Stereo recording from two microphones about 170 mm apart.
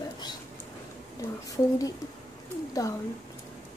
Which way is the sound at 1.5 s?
20° left (ahead or behind).